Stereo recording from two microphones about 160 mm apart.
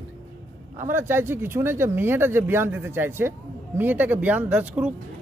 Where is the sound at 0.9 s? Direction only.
15° right (ahead or behind).